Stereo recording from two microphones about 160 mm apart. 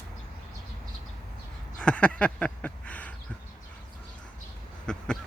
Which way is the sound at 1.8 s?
5° left (ahead or behind).